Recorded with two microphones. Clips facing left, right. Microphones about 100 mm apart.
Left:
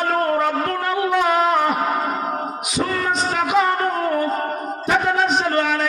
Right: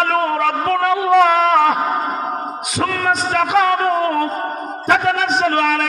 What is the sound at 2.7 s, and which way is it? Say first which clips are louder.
A man's voice: right 3 dB; 90° right.